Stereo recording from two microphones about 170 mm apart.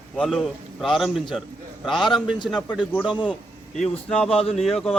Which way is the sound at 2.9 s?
Centre (ahead or behind).